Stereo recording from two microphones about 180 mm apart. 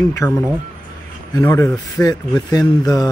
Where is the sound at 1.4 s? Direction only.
10° left (ahead or behind).